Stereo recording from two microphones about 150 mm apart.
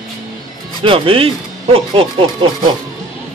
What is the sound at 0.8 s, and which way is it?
Speech, 35° right (ahead or behind).